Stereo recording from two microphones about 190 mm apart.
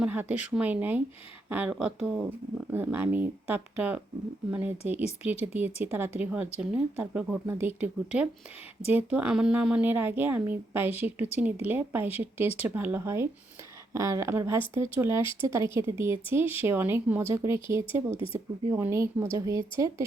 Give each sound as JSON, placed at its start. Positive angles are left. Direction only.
{"t": 0.0, "sound": "speech", "side_deg": -10}